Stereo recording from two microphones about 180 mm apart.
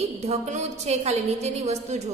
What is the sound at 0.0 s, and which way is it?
A woman's voice, 35° right (ahead or behind).